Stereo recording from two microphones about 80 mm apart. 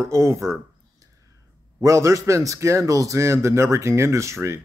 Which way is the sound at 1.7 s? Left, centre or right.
Right.